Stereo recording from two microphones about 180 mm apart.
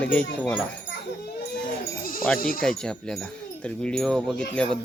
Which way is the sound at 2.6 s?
5° left (ahead or behind).